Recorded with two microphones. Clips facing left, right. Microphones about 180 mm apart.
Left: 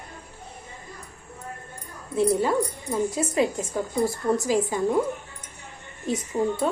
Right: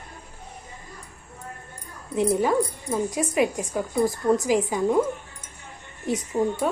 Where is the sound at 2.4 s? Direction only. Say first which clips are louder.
Right 1 dB; 15° right (ahead or behind).